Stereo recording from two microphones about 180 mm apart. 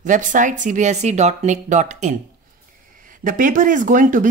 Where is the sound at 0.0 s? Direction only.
45° right (ahead or behind).